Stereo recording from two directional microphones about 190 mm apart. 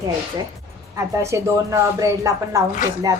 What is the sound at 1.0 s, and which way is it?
A woman's voice, 15° right (ahead or behind).